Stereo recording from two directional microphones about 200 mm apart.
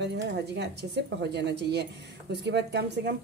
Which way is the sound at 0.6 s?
55° right (ahead or behind).